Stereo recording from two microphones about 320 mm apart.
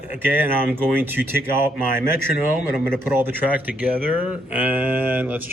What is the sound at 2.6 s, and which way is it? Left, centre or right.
Speech, centre.